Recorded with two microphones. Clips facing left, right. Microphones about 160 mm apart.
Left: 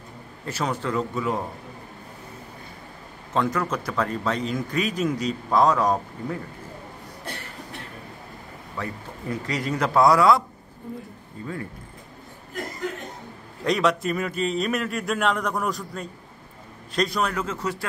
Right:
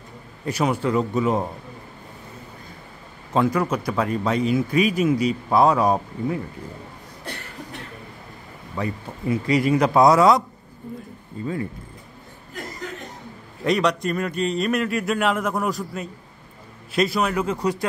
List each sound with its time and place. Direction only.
0.5 s a man's voice: 15° right (ahead or behind)
3.3 s a man's voice: 10° right (ahead or behind)
8.7 s a man's voice: 15° right (ahead or behind)
13.7 s a man's voice: centre (ahead or behind); by 17.8 s 15° right (ahead or behind)